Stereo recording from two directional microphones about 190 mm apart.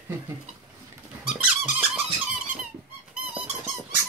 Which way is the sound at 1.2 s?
5° right (ahead or behind).